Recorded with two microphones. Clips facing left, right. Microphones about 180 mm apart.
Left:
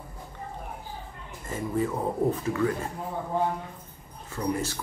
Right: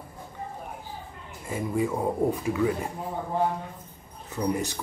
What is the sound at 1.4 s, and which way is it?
Speech, 10° right (ahead or behind).